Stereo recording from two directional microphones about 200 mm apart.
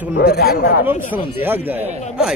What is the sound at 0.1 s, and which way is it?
Speech, 50° left (ahead or behind).